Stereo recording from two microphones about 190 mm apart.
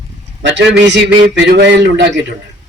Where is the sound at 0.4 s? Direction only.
65° right (ahead or behind).